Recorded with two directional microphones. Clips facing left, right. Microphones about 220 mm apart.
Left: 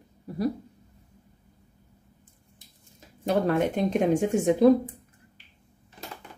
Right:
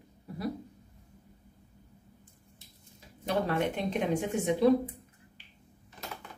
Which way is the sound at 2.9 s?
45° left (ahead or behind).